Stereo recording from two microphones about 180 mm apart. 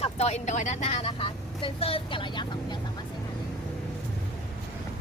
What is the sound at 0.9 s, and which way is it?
Speech, 30° left (ahead or behind).